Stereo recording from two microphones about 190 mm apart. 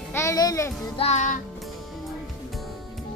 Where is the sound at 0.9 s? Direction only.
35° left (ahead or behind).